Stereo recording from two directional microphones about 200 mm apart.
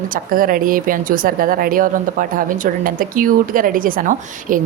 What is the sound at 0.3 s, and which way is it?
A woman's voice, 45° right (ahead or behind).